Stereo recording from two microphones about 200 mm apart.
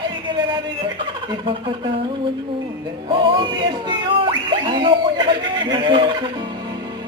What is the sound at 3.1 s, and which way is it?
Speech, 25° right (ahead or behind).